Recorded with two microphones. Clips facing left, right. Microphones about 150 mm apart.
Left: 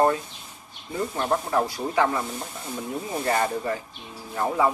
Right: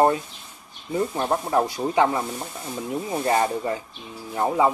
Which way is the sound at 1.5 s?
20° right (ahead or behind).